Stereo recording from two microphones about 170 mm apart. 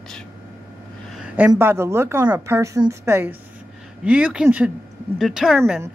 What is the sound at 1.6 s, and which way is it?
Speech, 15° right (ahead or behind).